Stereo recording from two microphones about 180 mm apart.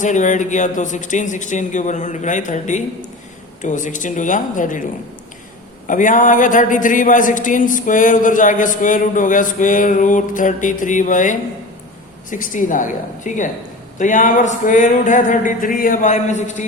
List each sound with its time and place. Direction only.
0.0 s speech: 45° left (ahead or behind)
5.9 s speech: 45° left (ahead or behind)